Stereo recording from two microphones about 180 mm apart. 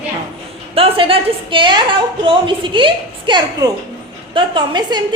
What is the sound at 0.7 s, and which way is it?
A woman's voice, 30° right (ahead or behind).